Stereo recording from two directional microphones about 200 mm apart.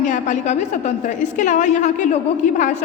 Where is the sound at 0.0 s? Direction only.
40° left (ahead or behind).